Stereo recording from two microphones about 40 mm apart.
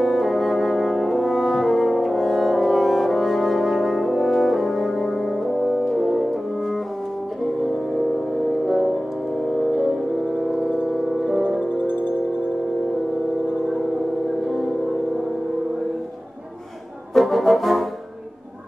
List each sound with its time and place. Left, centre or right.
0.0 s french horn: centre
9.5 s music: centre
11.2 s music: centre
17.1 s brass instrument: centre